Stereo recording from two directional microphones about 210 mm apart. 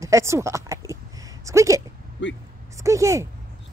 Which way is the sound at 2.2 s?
60° left (ahead or behind).